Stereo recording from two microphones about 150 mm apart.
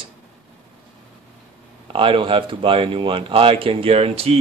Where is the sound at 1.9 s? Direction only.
35° right (ahead or behind).